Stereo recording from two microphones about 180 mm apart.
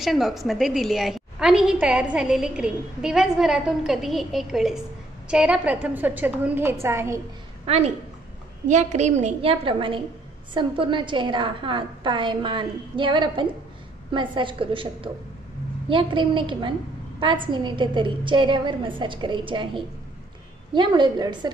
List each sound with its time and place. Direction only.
0.0 s a woman's voice: centre (ahead or behind)
7.6 s a woman's voice: 35° right (ahead or behind)